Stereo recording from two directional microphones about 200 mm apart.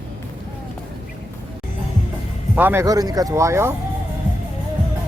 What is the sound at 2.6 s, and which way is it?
Speech, 10° right (ahead or behind).